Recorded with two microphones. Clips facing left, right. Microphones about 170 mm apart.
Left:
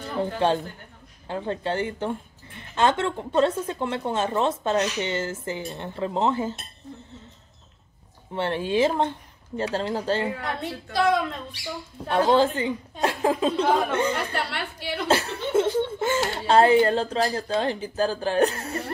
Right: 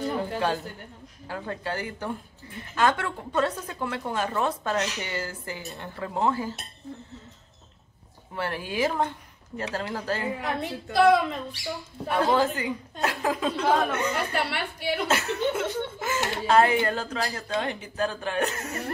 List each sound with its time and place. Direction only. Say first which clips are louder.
0.2 s a sound: left 4 dB; 25° left (ahead or behind)
1.2 s a woman's voice: left 5 dB; 25° left (ahead or behind)
8.4 s a woman's voice: left 5 dB; 25° left (ahead or behind)
10.4 s a woman's voice: right 1 dB; centre (ahead or behind)
12.1 s a woman's voice: left 3 dB; 30° left (ahead or behind)
14.1 s a woman's voice: even; 10° right (ahead or behind)
15.0 s speech: left 4 dB; 30° left (ahead or behind)